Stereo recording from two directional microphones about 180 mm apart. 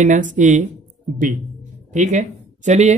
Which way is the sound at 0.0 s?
45° right (ahead or behind).